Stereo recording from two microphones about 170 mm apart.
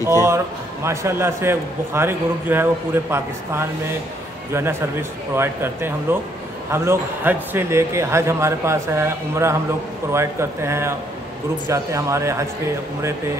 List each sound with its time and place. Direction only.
0.0 s a man's voice: 15° right (ahead or behind)